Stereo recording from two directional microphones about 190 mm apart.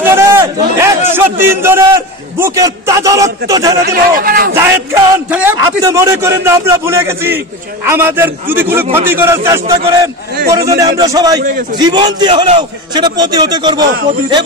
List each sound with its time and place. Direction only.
0.0 s a sound: 15° right (ahead or behind)
1.1 s a man's voice: 10° right (ahead or behind)
3.8 s a man's voice: 50° right (ahead or behind)
4.6 s a man's voice: 15° right (ahead or behind)